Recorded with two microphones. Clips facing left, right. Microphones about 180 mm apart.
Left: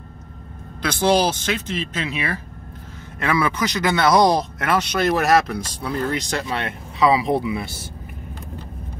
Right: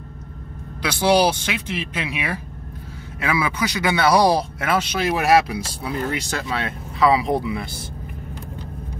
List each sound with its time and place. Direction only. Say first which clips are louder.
1.1 s speech: right 1 dB; 10° right (ahead or behind); by 7.6 s 5° left (ahead or behind)